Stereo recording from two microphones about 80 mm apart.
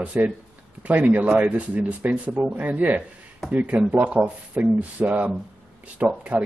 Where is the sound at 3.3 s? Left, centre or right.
Centre.